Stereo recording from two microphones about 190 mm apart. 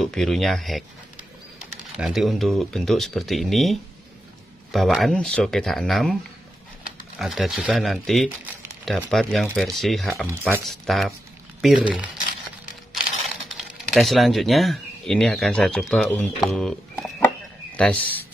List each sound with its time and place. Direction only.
0.0 s speech: 5° left (ahead or behind)
2.0 s speech: centre (ahead or behind)
7.2 s speech: centre (ahead or behind)
13.9 s speech: centre (ahead or behind)